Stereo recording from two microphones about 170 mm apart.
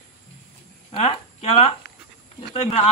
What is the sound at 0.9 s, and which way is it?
Speech, 35° left (ahead or behind).